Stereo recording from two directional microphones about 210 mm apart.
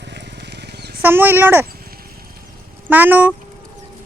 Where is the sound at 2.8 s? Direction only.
10° right (ahead or behind).